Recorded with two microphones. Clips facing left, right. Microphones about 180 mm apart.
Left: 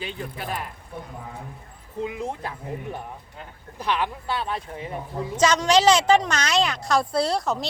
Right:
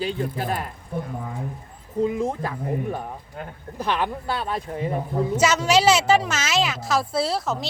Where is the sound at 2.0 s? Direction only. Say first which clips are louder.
Right 6 dB; 40° right (ahead or behind).